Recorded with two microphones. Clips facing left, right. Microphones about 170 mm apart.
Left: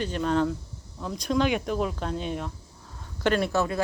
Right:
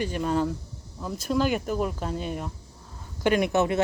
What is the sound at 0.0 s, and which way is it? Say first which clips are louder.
Speech: left 1 dB; 10° right (ahead or behind).